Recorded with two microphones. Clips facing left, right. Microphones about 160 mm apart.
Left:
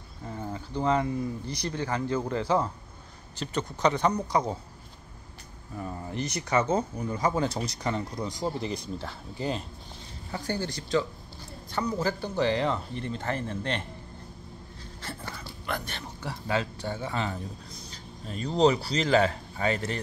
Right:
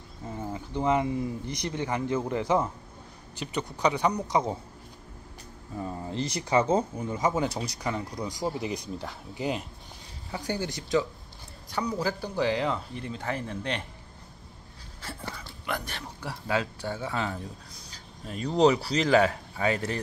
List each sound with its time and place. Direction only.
0.6 s speech: 20° right (ahead or behind)
5.8 s speech: 20° right (ahead or behind); by 13.8 s 5° right (ahead or behind)
15.2 s a sound: 5° left (ahead or behind)
15.6 s speech: 5° right (ahead or behind)